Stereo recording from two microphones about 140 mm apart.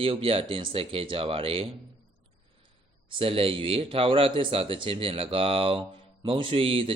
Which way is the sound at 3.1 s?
40° right (ahead or behind).